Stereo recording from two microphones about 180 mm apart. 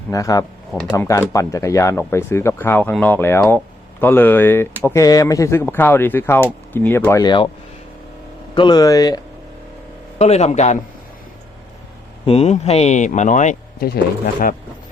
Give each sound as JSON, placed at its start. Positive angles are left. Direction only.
{"t": 0.1, "sound": "speech", "side_deg": 20}
{"t": 8.5, "sound": "speech", "side_deg": 25}
{"t": 10.2, "sound": "speech", "side_deg": 35}
{"t": 12.2, "sound": "speech", "side_deg": 35}
{"t": 13.7, "sound": "speech", "side_deg": 60}